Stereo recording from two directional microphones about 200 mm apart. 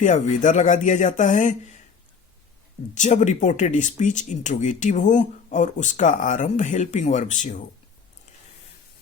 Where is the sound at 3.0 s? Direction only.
35° left (ahead or behind).